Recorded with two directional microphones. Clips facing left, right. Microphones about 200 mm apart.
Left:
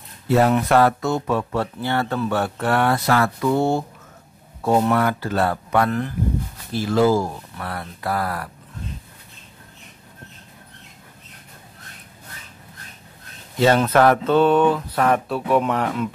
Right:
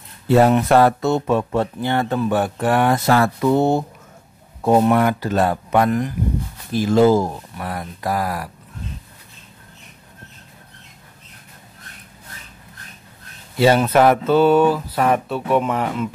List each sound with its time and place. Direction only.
0.3 s speech: 25° right (ahead or behind)
3.1 s speech: 25° right (ahead or behind)
13.6 s speech: 10° right (ahead or behind)